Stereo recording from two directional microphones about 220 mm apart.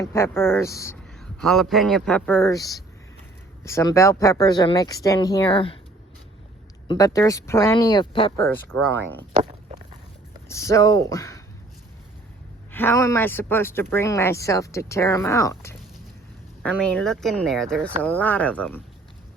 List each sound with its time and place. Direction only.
0.0 s speech: 10° left (ahead or behind)
1.4 s speech: centre (ahead or behind); by 5.8 s 25° left (ahead or behind)
6.8 s speech: 15° left (ahead or behind)
10.5 s speech: 15° left (ahead or behind)
12.7 s speech: 10° left (ahead or behind)